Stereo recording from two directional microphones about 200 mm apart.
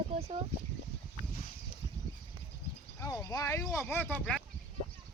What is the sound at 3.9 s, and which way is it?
Child singing, 10° left (ahead or behind).